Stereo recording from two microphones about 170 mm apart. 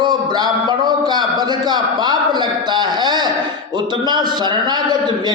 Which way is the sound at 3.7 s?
25° right (ahead or behind).